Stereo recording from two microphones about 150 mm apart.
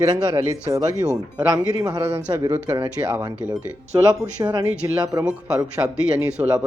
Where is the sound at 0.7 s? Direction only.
25° right (ahead or behind).